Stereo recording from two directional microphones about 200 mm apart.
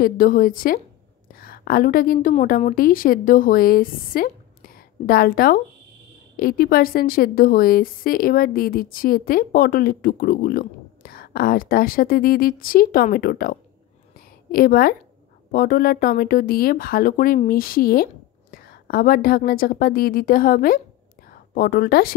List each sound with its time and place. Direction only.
0.0 s a woman's voice: 45° left (ahead or behind)
14.1 s a sound: 45° left (ahead or behind)
15.5 s speech: 45° left (ahead or behind)